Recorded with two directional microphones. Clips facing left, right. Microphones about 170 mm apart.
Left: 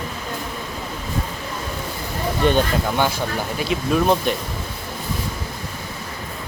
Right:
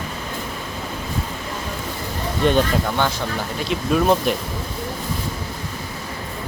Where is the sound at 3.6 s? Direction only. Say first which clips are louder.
Right 1 dB; centre (ahead or behind).